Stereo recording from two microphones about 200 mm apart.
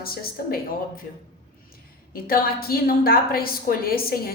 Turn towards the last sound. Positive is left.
turn(degrees=50)  # may be behind; listen again after turning